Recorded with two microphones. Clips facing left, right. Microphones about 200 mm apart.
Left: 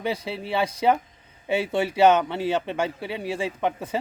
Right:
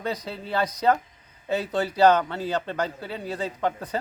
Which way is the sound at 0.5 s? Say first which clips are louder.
Left 1 dB; 10° left (ahead or behind).